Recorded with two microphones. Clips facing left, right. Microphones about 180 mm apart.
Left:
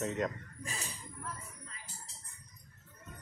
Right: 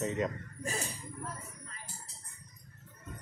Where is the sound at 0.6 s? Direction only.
40° right (ahead or behind).